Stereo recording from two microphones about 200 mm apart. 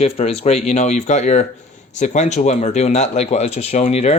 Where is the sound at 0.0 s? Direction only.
30° left (ahead or behind).